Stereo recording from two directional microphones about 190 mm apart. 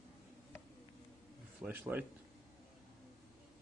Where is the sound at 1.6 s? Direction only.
10° right (ahead or behind).